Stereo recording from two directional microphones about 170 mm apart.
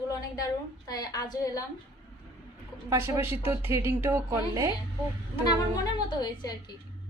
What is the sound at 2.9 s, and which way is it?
Speech, 15° right (ahead or behind).